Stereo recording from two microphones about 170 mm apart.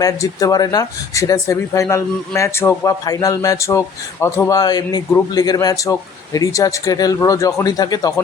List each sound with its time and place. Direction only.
0.0 s speech: 20° left (ahead or behind)